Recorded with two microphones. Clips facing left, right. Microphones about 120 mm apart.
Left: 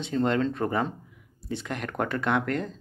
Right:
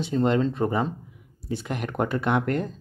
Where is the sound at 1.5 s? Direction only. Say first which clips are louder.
Right 3 dB; 5° right (ahead or behind).